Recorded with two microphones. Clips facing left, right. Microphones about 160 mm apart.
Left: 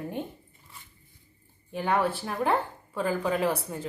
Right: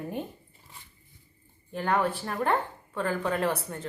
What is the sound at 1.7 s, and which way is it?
A woman's voice, 5° left (ahead or behind).